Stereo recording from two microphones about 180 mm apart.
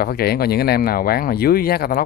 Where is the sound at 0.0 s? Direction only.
60° left (ahead or behind).